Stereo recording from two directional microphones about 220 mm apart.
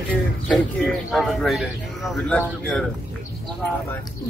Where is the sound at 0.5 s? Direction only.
Centre (ahead or behind).